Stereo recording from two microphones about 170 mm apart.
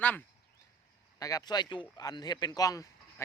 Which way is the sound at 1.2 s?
20° left (ahead or behind).